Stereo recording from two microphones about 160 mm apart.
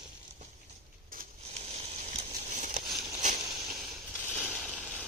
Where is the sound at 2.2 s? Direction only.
50° right (ahead or behind).